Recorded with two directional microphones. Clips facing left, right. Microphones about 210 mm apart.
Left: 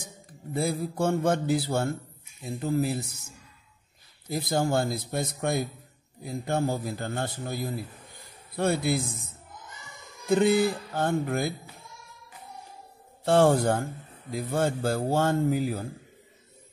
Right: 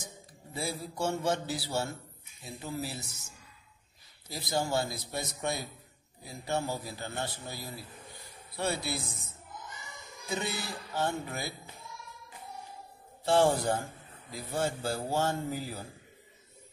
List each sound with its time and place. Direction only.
0.0 s a man's voice: 55° left (ahead or behind)
4.3 s a man's voice: 55° left (ahead or behind)
10.2 s a man's voice: 55° left (ahead or behind)
13.2 s a man's voice: 55° left (ahead or behind)